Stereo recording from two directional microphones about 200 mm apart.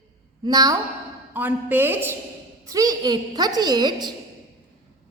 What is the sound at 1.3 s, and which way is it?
A woman's voice, 10° right (ahead or behind).